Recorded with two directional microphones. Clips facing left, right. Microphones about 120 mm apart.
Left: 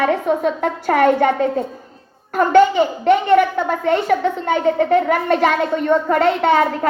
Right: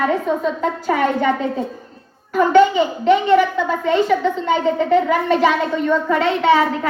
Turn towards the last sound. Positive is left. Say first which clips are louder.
# even
turn(degrees=45)  # may be behind; listen again after turning